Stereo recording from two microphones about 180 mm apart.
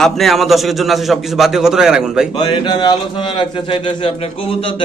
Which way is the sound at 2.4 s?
25° left (ahead or behind).